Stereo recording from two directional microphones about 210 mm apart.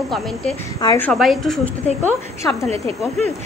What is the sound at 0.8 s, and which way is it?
Speech, 15° left (ahead or behind).